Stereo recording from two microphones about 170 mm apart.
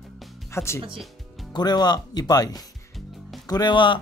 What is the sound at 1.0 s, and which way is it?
Music, centre (ahead or behind).